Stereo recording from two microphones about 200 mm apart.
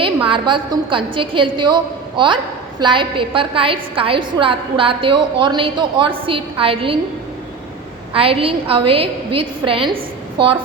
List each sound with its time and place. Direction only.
0.3 s a woman's voice: 25° right (ahead or behind)
8.1 s a woman's voice: 30° right (ahead or behind)